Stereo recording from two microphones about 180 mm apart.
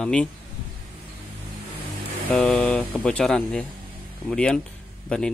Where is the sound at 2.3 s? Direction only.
5° left (ahead or behind).